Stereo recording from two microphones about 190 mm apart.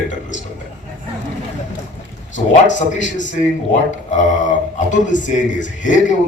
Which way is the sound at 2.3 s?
40° left (ahead or behind).